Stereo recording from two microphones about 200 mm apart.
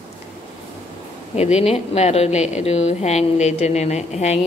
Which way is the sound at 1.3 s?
35° left (ahead or behind).